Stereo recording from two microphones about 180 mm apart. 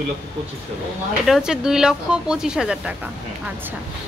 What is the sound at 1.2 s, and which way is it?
Speech, centre (ahead or behind).